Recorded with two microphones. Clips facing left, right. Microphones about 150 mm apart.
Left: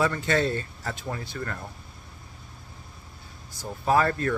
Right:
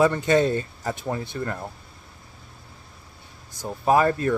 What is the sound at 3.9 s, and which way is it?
Speech, 20° right (ahead or behind).